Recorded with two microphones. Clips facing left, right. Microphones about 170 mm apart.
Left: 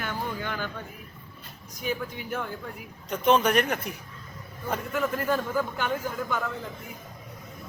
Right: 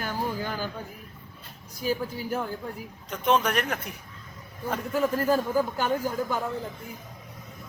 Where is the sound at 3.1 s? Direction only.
Centre (ahead or behind).